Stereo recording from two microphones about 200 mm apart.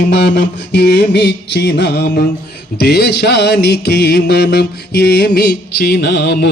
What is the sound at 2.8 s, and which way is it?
A man's voice, 50° left (ahead or behind).